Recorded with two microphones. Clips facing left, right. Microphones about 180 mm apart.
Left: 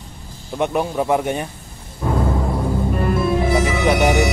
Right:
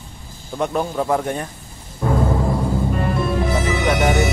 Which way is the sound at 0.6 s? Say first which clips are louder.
Left 1 dB; 10° left (ahead or behind).